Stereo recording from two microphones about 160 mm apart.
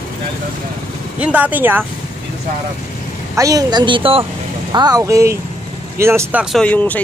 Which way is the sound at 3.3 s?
20° right (ahead or behind).